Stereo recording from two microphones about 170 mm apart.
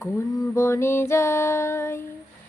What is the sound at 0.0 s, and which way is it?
A woman's voice, 15° left (ahead or behind).